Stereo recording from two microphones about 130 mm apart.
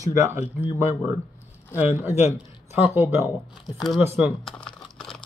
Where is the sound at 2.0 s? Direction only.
55° left (ahead or behind).